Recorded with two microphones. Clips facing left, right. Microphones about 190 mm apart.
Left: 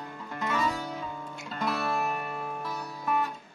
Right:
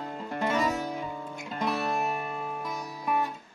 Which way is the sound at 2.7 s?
15° right (ahead or behind).